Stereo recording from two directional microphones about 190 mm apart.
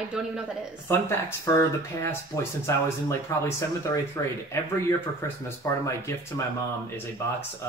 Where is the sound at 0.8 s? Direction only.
15° left (ahead or behind).